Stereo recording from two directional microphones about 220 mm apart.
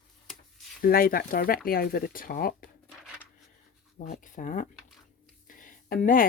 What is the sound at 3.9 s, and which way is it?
Speech, 40° left (ahead or behind).